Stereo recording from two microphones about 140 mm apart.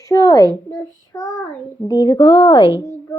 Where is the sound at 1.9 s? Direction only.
30° left (ahead or behind).